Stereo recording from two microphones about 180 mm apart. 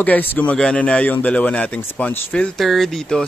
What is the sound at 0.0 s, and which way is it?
Speech, 10° left (ahead or behind).